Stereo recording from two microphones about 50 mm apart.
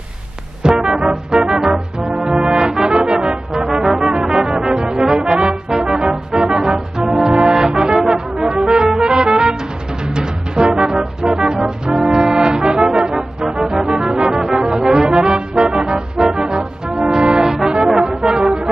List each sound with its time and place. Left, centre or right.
0.6 s music: centre
2.0 s brass instrument: centre
7.3 s music: centre
14.7 s brass instrument: centre
15.2 s music: centre
17.0 s brass instrument: centre